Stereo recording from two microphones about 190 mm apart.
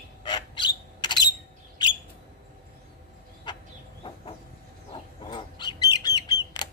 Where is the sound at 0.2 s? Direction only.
25° left (ahead or behind).